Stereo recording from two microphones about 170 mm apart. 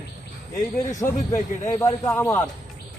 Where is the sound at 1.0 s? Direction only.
20° left (ahead or behind).